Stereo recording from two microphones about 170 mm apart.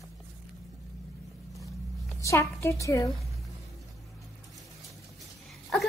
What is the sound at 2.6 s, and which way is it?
Speech, 20° left (ahead or behind).